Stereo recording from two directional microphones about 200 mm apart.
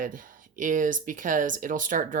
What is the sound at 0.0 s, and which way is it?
Speech, 45° right (ahead or behind).